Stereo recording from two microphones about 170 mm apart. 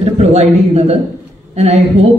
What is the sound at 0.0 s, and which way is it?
A man's voice, 40° right (ahead or behind).